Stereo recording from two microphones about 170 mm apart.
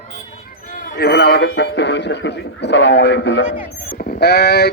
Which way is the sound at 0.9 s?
70° left (ahead or behind).